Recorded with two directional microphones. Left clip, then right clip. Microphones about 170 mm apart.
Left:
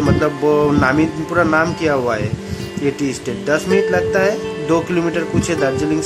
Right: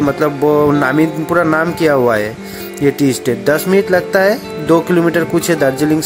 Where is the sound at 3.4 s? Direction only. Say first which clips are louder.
Right 1 dB; 30° right (ahead or behind).